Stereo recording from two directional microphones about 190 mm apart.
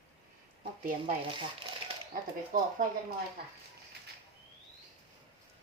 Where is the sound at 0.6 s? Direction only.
45° right (ahead or behind).